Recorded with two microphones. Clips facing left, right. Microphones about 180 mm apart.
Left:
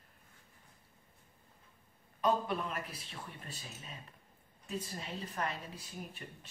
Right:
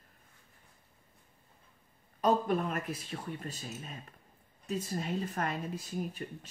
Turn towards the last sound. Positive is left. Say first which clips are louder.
# right 9 dB
turn(degrees=-45)  # may be behind; listen again after turning